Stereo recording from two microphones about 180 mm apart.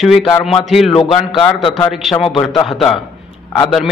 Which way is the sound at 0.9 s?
30° left (ahead or behind).